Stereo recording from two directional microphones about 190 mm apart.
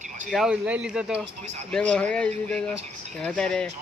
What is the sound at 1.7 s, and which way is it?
A man's voice, 5° left (ahead or behind).